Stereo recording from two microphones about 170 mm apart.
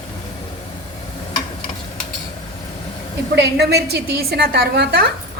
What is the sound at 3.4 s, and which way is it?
A woman's voice, 75° right (ahead or behind).